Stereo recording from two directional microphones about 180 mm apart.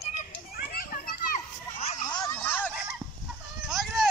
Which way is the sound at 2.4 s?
10° left (ahead or behind).